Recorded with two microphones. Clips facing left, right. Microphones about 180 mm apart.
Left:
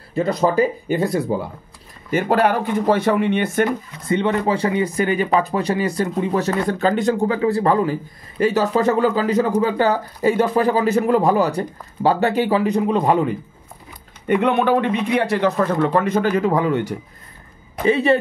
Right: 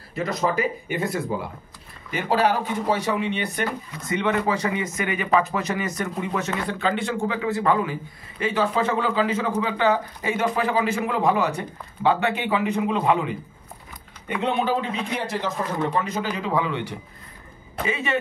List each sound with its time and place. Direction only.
0.1 s speech: 30° left (ahead or behind)
2.0 s speech: 50° left (ahead or behind)
4.0 s speech: 30° left (ahead or behind)
14.2 s a man's voice: 55° left (ahead or behind)
17.8 s speech: 35° left (ahead or behind)